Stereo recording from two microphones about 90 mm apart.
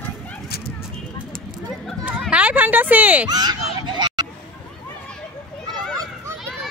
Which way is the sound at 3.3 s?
50° right (ahead or behind).